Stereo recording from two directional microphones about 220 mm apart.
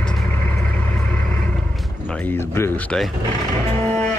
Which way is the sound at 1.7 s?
5° left (ahead or behind).